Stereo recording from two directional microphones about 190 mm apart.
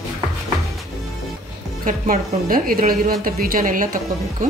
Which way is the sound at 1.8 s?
45° right (ahead or behind).